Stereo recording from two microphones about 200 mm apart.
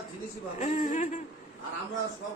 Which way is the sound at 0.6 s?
40° left (ahead or behind).